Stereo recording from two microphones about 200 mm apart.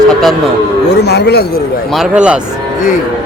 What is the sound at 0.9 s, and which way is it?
Speech, 55° left (ahead or behind).